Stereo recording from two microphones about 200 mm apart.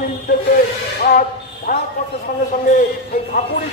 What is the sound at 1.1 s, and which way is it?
Speech, 45° left (ahead or behind).